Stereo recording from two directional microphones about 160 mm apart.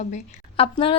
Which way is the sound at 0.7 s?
35° left (ahead or behind).